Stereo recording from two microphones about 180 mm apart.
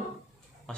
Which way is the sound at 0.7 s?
5° left (ahead or behind).